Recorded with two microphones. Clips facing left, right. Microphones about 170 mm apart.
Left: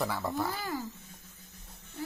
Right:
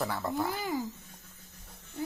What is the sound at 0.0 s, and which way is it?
Speech, centre (ahead or behind).